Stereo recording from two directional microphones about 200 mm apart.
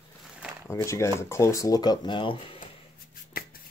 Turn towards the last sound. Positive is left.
turn(degrees=50)  # may be behind; listen again after turning